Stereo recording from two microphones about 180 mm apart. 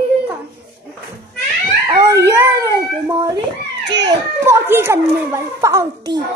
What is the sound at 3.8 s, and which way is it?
Children playing, 75° right (ahead or behind).